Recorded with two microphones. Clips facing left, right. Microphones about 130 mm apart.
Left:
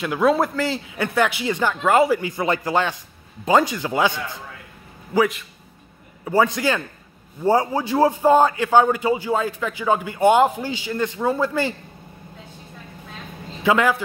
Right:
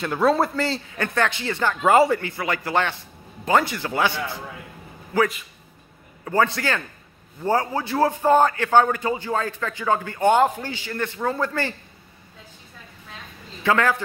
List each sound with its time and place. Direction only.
0.0 s a man's voice: centre (ahead or behind)
1.8 s speech: centre (ahead or behind)
2.1 s a man's voice: 15° left (ahead or behind)
13.6 s a man's voice: 15° left (ahead or behind)